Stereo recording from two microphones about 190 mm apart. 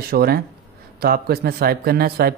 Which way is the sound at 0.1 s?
55° right (ahead or behind).